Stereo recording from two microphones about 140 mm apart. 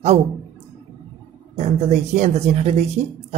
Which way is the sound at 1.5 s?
50° right (ahead or behind).